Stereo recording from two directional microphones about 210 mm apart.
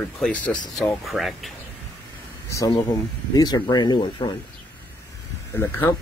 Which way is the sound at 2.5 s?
15° left (ahead or behind).